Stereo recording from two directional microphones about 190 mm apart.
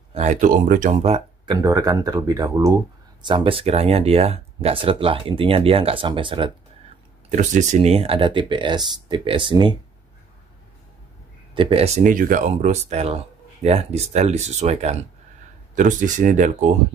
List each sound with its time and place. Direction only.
0.1 s speech: 35° right (ahead or behind)
1.0 s a sound: 35° right (ahead or behind)
1.5 s speech: 20° right (ahead or behind)
7.2 s speech: 40° right (ahead or behind)
11.5 s speech: 30° right (ahead or behind)